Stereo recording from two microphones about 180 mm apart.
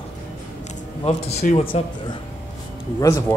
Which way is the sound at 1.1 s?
35° left (ahead or behind).